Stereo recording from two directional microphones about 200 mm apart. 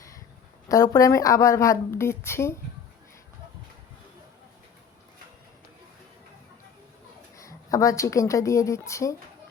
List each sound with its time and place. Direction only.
0.7 s a woman's voice: 15° left (ahead or behind)
7.3 s a woman's voice: 15° left (ahead or behind)